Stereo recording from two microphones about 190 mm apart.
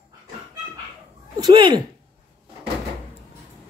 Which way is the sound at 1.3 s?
20° right (ahead or behind).